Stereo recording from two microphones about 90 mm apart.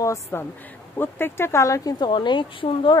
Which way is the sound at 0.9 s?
25° left (ahead or behind).